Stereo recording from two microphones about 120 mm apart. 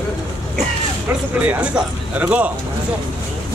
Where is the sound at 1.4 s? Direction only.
10° right (ahead or behind).